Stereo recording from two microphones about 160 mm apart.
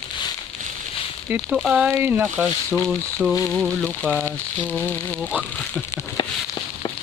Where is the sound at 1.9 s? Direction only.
15° right (ahead or behind).